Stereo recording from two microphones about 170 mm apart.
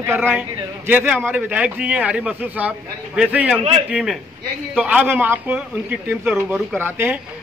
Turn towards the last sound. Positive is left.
turn(degrees=-10)  # may be behind; listen again after turning